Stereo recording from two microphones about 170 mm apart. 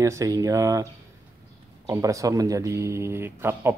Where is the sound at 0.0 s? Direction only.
20° right (ahead or behind).